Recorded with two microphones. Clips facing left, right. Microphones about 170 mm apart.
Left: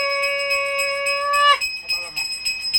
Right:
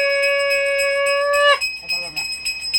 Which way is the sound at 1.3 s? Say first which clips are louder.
Right 4 dB; 55° right (ahead or behind).